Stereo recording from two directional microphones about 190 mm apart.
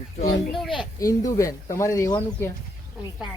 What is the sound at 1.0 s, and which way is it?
Speech, 15° left (ahead or behind).